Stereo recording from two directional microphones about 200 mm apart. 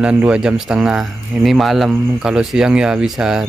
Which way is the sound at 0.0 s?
5° right (ahead or behind).